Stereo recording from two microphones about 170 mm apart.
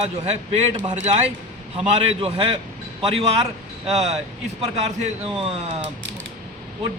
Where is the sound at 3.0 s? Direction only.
35° right (ahead or behind).